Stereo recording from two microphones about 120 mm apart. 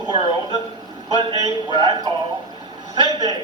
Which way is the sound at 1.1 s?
35° right (ahead or behind).